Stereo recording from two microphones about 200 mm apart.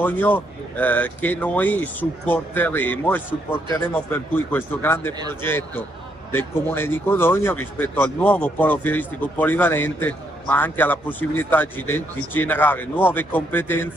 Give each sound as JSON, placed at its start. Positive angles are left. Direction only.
{"t": 0.0, "sound": "speech", "side_deg": 10}